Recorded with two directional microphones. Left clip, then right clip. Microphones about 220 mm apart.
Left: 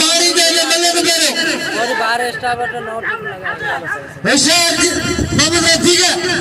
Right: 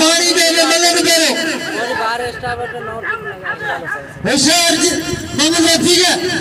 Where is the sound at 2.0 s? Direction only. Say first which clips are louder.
Left 3 dB; 35° left (ahead or behind).